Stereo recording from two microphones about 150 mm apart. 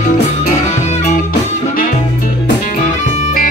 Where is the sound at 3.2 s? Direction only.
60° left (ahead or behind).